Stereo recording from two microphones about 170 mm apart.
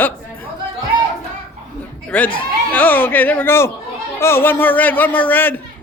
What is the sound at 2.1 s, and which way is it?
A man's voice, 10° left (ahead or behind).